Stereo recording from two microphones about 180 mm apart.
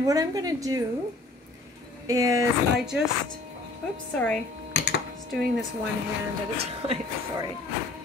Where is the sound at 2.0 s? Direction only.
20° right (ahead or behind).